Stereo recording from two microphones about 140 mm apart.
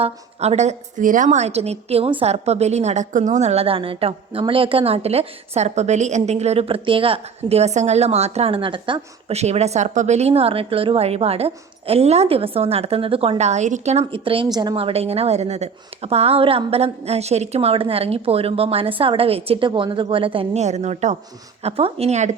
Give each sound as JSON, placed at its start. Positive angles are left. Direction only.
{"t": 0.0, "sound": "a woman's voice", "side_deg": -50}
{"t": 9.3, "sound": "a woman's voice", "side_deg": -50}
{"t": 14.0, "sound": "speech", "side_deg": -40}
{"t": 14.5, "sound": "a woman's voice", "side_deg": -30}
{"t": 14.8, "sound": "a woman's voice", "side_deg": -45}